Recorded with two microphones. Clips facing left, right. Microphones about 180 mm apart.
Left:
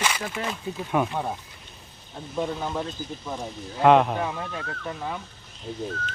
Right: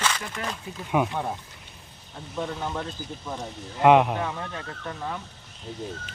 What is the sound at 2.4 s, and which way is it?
Speech, 10° left (ahead or behind).